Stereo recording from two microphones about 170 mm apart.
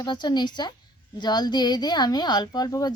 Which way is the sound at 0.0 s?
25° left (ahead or behind).